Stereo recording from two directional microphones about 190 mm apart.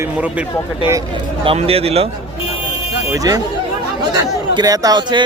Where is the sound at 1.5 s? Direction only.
30° right (ahead or behind).